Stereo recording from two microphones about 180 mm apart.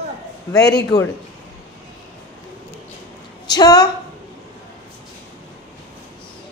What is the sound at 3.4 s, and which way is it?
Speech, 20° left (ahead or behind).